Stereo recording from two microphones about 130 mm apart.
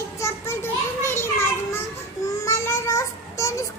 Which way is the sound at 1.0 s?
20° left (ahead or behind).